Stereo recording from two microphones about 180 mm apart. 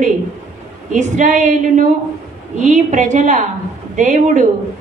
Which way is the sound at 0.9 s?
40° right (ahead or behind).